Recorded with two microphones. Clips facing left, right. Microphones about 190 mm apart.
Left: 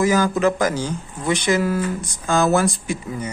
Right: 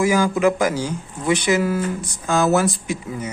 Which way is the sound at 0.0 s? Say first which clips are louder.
Even; 10° right (ahead or behind).